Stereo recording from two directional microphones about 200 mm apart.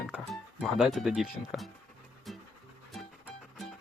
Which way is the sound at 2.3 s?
Centre (ahead or behind).